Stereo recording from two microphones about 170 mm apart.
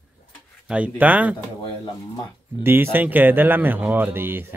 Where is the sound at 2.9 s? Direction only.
10° right (ahead or behind).